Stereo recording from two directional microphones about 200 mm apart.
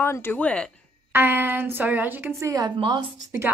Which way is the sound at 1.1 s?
10° right (ahead or behind).